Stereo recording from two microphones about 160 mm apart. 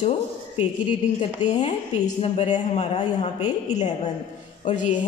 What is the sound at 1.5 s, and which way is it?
A woman's voice, 45° left (ahead or behind).